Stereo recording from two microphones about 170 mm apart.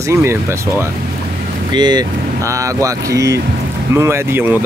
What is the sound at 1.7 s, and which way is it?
Speech, 25° right (ahead or behind).